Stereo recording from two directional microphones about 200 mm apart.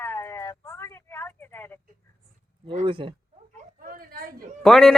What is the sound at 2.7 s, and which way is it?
Speech, 25° right (ahead or behind).